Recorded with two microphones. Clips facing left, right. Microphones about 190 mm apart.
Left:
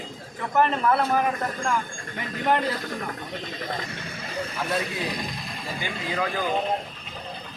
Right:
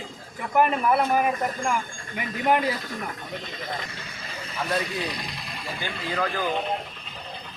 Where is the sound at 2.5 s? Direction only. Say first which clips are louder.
Right 1 dB; 10° right (ahead or behind).